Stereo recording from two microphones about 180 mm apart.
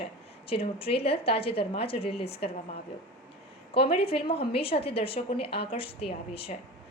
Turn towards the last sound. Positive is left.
turn(degrees=30)  # may be behind; listen again after turning